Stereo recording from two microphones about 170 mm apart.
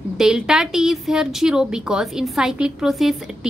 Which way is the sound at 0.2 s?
5° right (ahead or behind).